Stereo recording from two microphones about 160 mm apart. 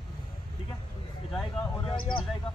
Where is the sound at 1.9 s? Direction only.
30° left (ahead or behind).